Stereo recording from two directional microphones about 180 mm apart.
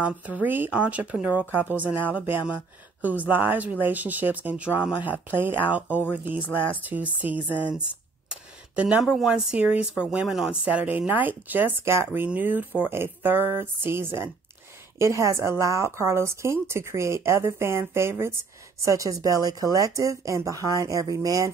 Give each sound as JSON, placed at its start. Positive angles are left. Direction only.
{"t": 0.0, "sound": "speech", "side_deg": -10}